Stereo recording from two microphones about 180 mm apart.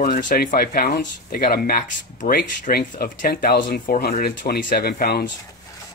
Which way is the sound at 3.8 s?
50° left (ahead or behind).